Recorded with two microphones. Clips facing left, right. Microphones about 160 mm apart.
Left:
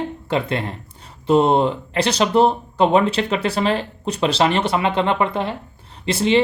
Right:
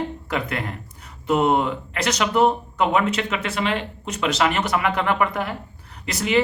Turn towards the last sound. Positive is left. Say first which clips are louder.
# left 4 dB
turn(degrees=30)  # may be behind; listen again after turning